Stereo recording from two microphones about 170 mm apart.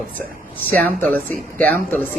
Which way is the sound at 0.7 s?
10° left (ahead or behind).